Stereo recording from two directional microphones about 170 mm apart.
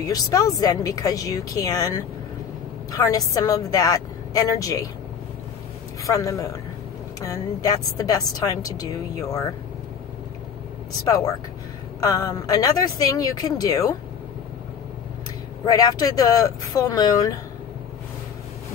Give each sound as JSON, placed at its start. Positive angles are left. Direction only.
{"t": 0.0, "sound": "a woman's voice", "side_deg": 20}
{"t": 6.0, "sound": "a woman's voice", "side_deg": 20}
{"t": 12.0, "sound": "a woman's voice", "side_deg": 20}
{"t": 15.6, "sound": "a woman's voice", "side_deg": 20}